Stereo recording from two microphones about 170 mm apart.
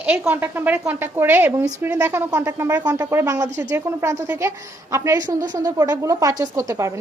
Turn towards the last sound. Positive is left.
turn(degrees=-20)  # may be behind; listen again after turning